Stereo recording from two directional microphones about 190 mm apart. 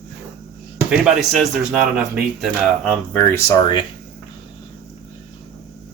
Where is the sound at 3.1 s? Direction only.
15° left (ahead or behind).